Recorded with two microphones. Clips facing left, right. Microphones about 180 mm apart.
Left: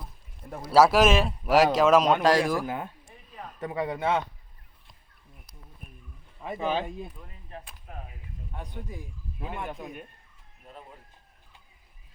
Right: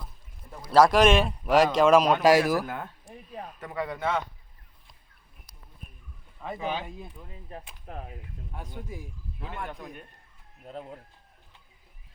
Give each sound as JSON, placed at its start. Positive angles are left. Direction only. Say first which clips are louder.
{"t": 0.7, "sound": "a man's voice", "louder": "even", "side_deg": 5}
{"t": 2.6, "sound": "a man's voice", "louder": "left 3 dB", "side_deg": 15}
{"t": 7.5, "sound": "speech", "louder": "even", "side_deg": -20}
{"t": 8.5, "sound": "speech", "louder": "even", "side_deg": -10}
{"t": 9.6, "sound": "a man's voice", "louder": "left 2 dB", "side_deg": 15}